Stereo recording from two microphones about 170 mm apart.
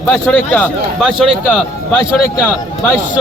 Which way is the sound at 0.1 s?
5° left (ahead or behind).